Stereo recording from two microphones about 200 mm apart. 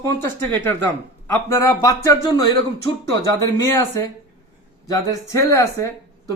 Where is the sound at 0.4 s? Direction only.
10° left (ahead or behind).